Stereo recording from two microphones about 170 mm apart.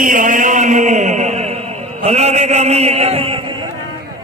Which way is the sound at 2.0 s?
40° right (ahead or behind).